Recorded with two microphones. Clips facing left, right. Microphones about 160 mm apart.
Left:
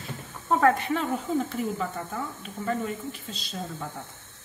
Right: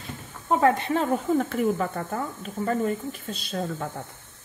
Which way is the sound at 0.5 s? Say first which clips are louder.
Right 1 dB; 20° right (ahead or behind).